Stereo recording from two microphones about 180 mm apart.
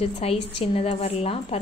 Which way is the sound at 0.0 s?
35° left (ahead or behind).